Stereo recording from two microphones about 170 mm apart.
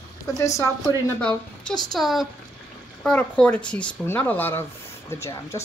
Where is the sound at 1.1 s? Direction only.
5° left (ahead or behind).